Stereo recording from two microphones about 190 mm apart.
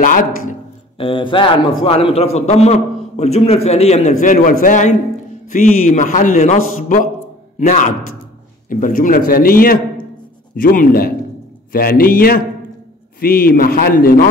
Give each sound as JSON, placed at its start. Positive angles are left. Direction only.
{"t": 0.9, "sound": "a man's voice", "side_deg": 30}